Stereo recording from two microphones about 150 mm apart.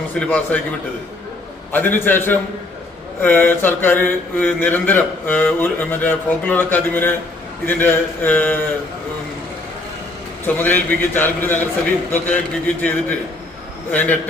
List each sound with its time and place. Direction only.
0.2 s speech: 10° left (ahead or behind)
1.7 s speech: 15° left (ahead or behind)
10.4 s speech: 10° left (ahead or behind)